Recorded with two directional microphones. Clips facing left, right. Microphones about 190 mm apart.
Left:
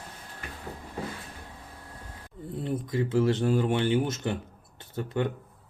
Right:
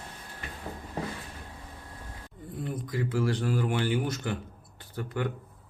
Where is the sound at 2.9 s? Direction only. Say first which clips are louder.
Left 4 dB; 25° left (ahead or behind).